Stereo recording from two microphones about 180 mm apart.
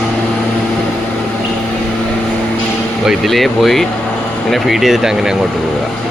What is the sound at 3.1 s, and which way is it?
Speech, centre (ahead or behind).